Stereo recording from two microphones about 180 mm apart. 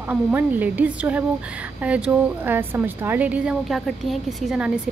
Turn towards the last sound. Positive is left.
turn(degrees=0)  # may be behind; listen again after turning